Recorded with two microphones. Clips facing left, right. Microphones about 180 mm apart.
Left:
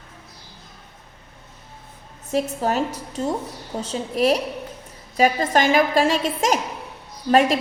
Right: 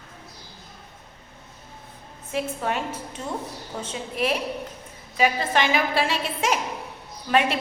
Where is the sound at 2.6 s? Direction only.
40° left (ahead or behind).